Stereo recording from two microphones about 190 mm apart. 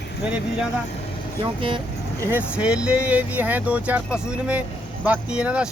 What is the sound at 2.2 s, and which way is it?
Speech, 10° right (ahead or behind).